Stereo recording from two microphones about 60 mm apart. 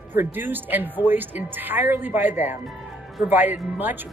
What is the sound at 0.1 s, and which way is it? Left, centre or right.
Speech, right.